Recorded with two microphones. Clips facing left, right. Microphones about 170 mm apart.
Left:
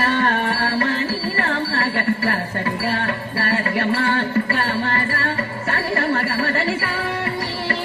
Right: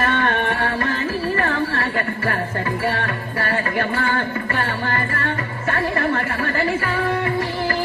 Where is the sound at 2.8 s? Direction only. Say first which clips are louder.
Even; 30° left (ahead or behind).